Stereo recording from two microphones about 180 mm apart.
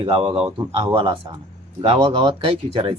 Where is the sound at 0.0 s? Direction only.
30° right (ahead or behind).